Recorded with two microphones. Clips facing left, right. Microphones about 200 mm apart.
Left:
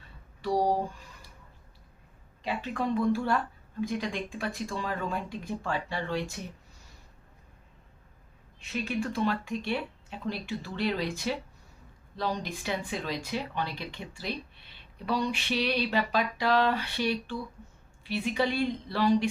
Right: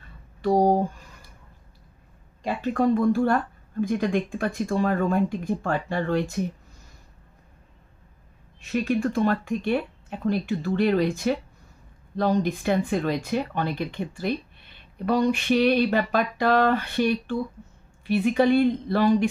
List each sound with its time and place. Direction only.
0.4 s a sound: 50° right (ahead or behind)
2.4 s speech: 45° right (ahead or behind)
8.7 s speech: 50° right (ahead or behind)